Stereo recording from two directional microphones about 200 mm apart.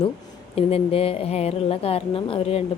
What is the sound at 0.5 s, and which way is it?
A woman's voice, 30° left (ahead or behind).